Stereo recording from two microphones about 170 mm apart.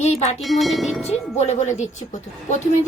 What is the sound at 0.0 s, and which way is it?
Speech, 40° left (ahead or behind).